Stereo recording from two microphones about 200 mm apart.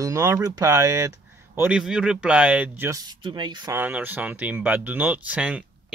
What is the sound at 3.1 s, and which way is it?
Speech, 25° right (ahead or behind).